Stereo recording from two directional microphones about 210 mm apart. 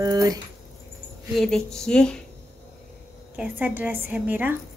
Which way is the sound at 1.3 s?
Centre (ahead or behind).